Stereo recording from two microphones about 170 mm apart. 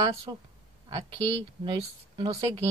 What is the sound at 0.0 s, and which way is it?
Speech, 25° right (ahead or behind).